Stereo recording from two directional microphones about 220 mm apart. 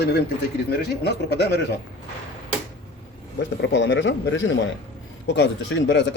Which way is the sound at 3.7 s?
55° left (ahead or behind).